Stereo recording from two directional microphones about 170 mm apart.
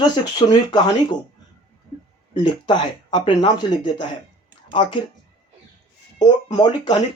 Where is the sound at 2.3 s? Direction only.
30° left (ahead or behind).